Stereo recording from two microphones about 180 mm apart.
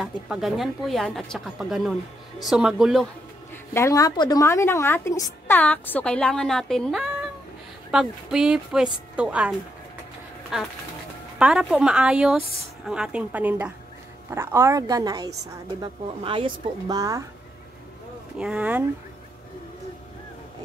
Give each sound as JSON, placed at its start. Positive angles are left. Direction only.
{"t": 0.0, "sound": "a woman's voice", "side_deg": 0}
{"t": 3.7, "sound": "a woman's voice", "side_deg": 15}
{"t": 18.4, "sound": "speech", "side_deg": -5}